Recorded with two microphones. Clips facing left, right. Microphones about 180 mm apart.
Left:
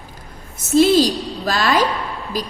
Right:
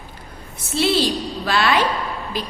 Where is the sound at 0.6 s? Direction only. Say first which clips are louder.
Left 6 dB; 45° left (ahead or behind).